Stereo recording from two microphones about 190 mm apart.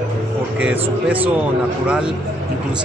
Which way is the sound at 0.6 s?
5° right (ahead or behind).